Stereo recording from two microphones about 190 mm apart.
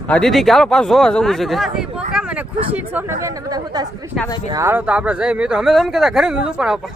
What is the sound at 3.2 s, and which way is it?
Speech, 20° right (ahead or behind).